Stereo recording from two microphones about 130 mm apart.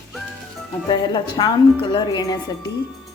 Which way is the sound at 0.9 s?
35° left (ahead or behind).